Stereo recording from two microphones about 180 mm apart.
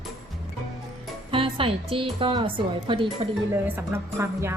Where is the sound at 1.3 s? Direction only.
30° right (ahead or behind).